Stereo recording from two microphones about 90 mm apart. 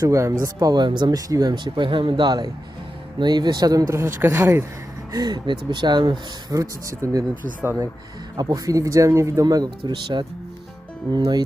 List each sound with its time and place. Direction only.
0.0 s speech: 35° right (ahead or behind)
0.7 s speech: 55° right (ahead or behind); by 4.1 s 35° right (ahead or behind)
4.2 s speech: 25° right (ahead or behind)
5.1 s speech: 50° right (ahead or behind)
6.6 s speech: 40° right (ahead or behind)
8.4 s speech: 45° right (ahead or behind)
9.9 s speech: 60° right (ahead or behind)